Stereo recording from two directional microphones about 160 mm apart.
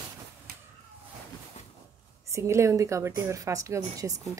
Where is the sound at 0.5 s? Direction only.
70° right (ahead or behind).